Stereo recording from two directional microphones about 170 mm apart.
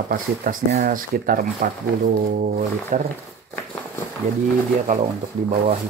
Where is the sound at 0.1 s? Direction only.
55° right (ahead or behind).